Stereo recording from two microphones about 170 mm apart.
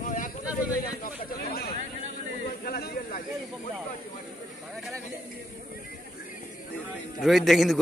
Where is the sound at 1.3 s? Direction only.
65° left (ahead or behind).